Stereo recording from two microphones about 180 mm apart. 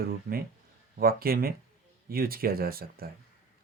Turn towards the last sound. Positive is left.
turn(degrees=-55)  # may be behind; listen again after turning